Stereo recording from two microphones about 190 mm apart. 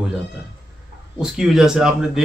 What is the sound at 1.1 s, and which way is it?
Speech, 5° right (ahead or behind).